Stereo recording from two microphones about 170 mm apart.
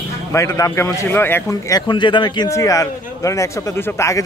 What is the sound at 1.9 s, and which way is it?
Speech, 30° left (ahead or behind).